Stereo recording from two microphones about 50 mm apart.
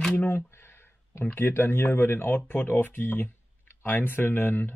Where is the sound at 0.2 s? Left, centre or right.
Left.